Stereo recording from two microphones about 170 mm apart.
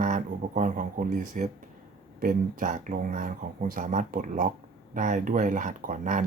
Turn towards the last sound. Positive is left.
turn(degrees=-50)  # may be behind; listen again after turning